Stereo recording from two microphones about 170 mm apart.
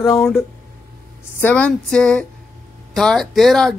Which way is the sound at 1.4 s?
10° left (ahead or behind).